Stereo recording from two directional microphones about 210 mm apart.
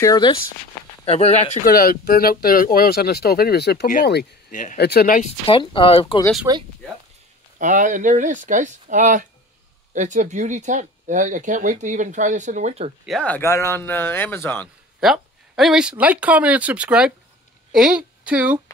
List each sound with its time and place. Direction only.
0.0 s speech: 20° left (ahead or behind)
1.0 s speech: 30° left (ahead or behind)
5.5 s speech: 25° left (ahead or behind)
6.5 s speech: 15° right (ahead or behind)
7.5 s speech: 35° right (ahead or behind)
13.0 s speech: centre (ahead or behind)
15.0 s a woman's voice: centre (ahead or behind)